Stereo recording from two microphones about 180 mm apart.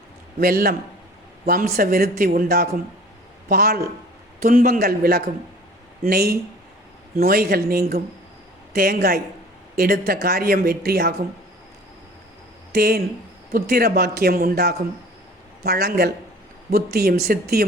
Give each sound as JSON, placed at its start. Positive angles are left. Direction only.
{"t": 0.3, "sound": "speech", "side_deg": -55}
{"t": 12.7, "sound": "speech", "side_deg": -60}